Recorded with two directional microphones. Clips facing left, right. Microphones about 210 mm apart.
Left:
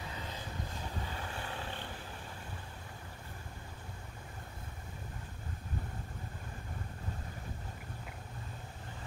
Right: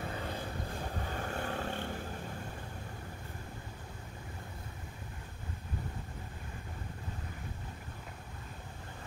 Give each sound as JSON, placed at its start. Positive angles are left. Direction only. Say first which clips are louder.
{"t": 0.0, "sound": "vehicle", "louder": "right 5 dB", "side_deg": -50}